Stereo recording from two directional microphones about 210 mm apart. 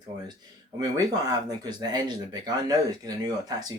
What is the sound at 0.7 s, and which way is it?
Speech, 20° right (ahead or behind).